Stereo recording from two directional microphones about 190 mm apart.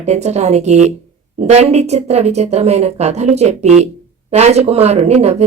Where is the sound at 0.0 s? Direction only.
35° right (ahead or behind).